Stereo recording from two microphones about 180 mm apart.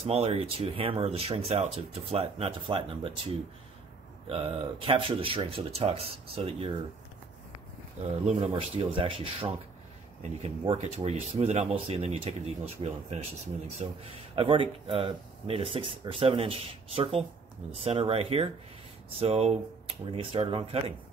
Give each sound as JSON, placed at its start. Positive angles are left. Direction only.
{"t": 0.0, "sound": "speech", "side_deg": -35}
{"t": 8.0, "sound": "speech", "side_deg": -35}